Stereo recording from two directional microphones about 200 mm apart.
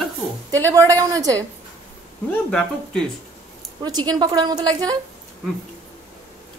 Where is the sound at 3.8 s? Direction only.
20° right (ahead or behind).